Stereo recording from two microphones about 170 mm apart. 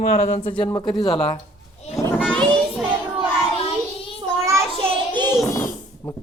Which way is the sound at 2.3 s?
5° left (ahead or behind).